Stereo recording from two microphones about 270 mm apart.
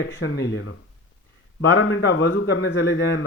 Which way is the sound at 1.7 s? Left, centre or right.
Left.